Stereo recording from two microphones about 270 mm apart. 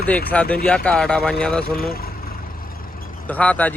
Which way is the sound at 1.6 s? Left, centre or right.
Left.